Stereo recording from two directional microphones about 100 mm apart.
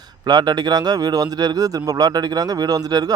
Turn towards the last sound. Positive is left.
turn(degrees=-40)  # may be behind; listen again after turning